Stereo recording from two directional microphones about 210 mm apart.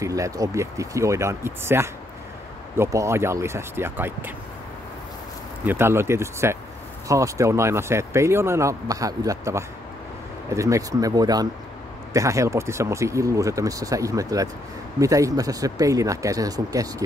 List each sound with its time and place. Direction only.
0.0 s speech: 15° right (ahead or behind)
5.6 s speech: 10° right (ahead or behind)